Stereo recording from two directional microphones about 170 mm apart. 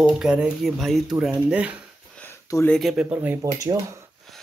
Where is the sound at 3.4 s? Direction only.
20° right (ahead or behind).